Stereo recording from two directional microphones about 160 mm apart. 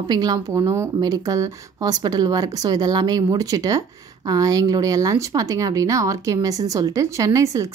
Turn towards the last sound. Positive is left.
turn(degrees=-20)  # may be behind; listen again after turning